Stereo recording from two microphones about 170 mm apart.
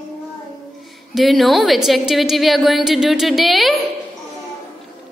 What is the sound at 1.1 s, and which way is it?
A woman's voice, centre (ahead or behind).